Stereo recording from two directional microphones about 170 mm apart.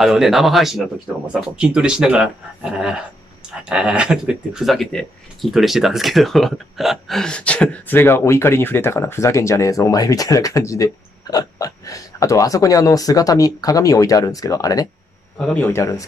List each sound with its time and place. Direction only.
0.0 s speech: centre (ahead or behind); by 14.9 s 20° left (ahead or behind)
15.3 s speech: 5° left (ahead or behind)